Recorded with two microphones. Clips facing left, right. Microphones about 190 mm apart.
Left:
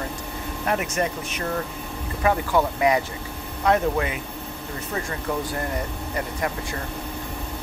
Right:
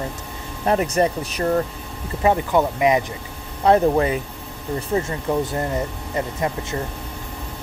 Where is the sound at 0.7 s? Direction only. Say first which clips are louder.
Right 6 dB; 35° right (ahead or behind).